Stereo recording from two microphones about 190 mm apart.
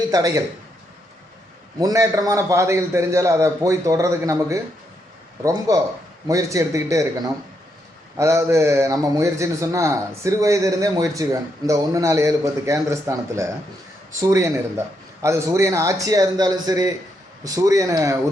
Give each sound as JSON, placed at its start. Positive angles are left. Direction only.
{"t": 0.1, "sound": "speech", "side_deg": -20}
{"t": 1.8, "sound": "a man's voice", "side_deg": -15}
{"t": 8.2, "sound": "a man's voice", "side_deg": -15}